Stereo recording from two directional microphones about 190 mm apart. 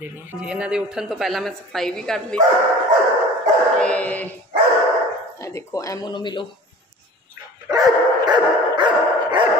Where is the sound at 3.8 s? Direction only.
5° left (ahead or behind).